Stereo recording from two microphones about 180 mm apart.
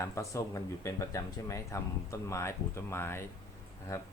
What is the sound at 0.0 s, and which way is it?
Speech, 15° left (ahead or behind).